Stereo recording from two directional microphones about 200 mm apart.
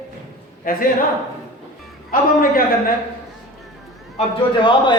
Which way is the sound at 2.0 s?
45° left (ahead or behind).